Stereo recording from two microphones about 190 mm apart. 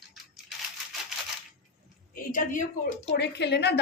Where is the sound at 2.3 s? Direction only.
45° left (ahead or behind).